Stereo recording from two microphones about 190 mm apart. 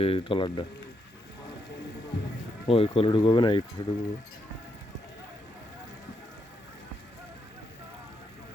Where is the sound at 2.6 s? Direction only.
30° left (ahead or behind).